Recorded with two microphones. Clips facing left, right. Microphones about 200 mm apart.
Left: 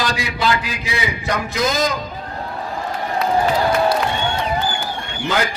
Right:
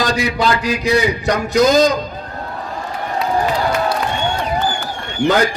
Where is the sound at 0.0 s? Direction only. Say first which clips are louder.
Right 4 dB; 40° right (ahead or behind).